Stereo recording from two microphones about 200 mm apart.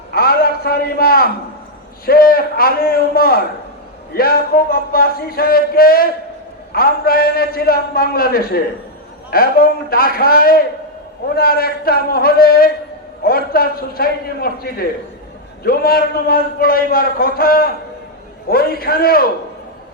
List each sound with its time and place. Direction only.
0.1 s a man's voice: 50° left (ahead or behind)